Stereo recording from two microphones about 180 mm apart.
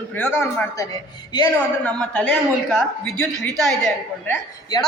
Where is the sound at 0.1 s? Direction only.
10° left (ahead or behind).